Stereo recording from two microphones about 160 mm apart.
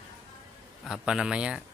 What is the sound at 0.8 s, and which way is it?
Speech, 5° right (ahead or behind).